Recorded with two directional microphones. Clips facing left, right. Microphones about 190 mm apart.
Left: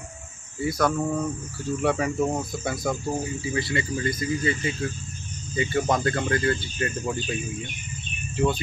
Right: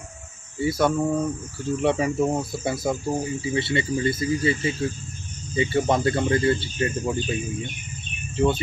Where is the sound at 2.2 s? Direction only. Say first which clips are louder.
Right 2 dB; 5° right (ahead or behind).